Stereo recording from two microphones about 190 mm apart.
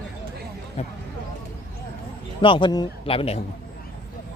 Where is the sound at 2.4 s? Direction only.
25° left (ahead or behind).